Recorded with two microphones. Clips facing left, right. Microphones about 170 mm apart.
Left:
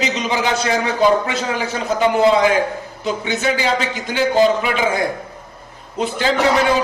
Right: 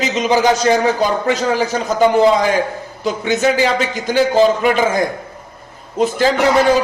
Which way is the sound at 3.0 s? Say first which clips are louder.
Right 5 dB; 45° right (ahead or behind).